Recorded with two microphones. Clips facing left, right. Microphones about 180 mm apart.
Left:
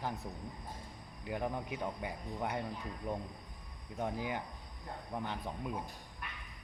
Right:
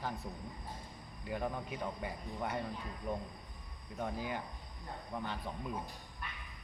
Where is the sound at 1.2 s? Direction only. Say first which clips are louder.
Left 1 dB; 15° left (ahead or behind).